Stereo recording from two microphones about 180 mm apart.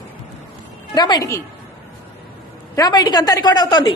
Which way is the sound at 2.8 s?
20° left (ahead or behind).